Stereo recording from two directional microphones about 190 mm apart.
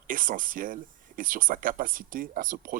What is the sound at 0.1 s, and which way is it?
Speech, 45° right (ahead or behind).